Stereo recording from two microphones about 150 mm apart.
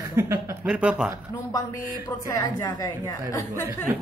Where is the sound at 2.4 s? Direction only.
25° left (ahead or behind).